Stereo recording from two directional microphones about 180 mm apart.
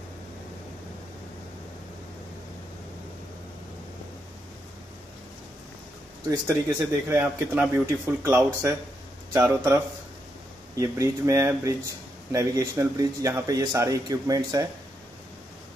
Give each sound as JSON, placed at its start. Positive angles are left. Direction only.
{"t": 6.4, "sound": "a man's voice", "side_deg": -15}
{"t": 10.8, "sound": "a man's voice", "side_deg": -20}